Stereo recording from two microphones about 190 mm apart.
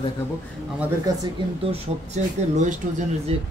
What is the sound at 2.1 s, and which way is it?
Speech, 40° right (ahead or behind).